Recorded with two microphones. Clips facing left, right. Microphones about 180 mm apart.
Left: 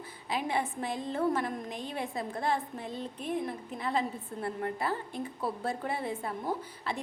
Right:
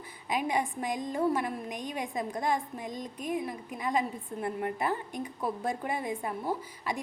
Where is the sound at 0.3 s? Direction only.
15° right (ahead or behind).